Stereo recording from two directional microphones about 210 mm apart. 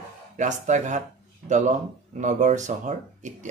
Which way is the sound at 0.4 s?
35° right (ahead or behind).